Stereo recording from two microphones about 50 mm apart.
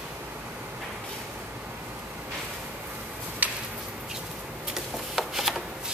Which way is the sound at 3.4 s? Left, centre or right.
Right.